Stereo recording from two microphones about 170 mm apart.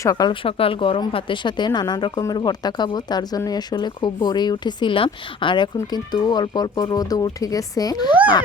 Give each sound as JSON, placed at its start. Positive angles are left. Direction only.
{"t": 0.0, "sound": "speech", "side_deg": 20}